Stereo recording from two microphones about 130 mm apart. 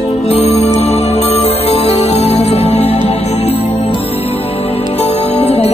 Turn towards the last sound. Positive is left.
turn(degrees=55)  # may be behind; listen again after turning